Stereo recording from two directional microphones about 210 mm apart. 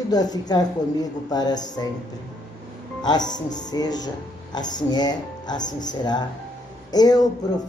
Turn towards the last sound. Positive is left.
turn(degrees=20)  # may be behind; listen again after turning